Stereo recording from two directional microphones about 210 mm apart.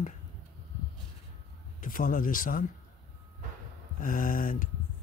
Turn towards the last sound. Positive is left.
turn(degrees=40)  # may be behind; listen again after turning